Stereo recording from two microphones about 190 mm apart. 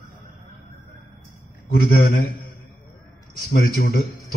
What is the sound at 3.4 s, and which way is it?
Speech, 50° left (ahead or behind).